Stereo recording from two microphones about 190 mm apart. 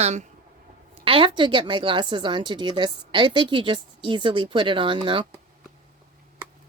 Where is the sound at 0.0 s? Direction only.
35° right (ahead or behind).